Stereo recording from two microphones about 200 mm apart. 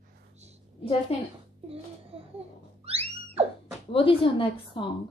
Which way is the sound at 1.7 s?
30° right (ahead or behind).